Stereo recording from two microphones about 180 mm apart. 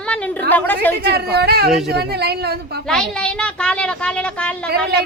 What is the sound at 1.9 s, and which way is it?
Speech, 65° right (ahead or behind).